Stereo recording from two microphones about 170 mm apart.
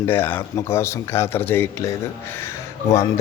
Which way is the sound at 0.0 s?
10° left (ahead or behind).